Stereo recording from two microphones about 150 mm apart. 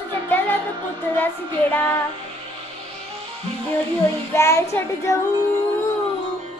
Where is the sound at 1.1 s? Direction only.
10° left (ahead or behind).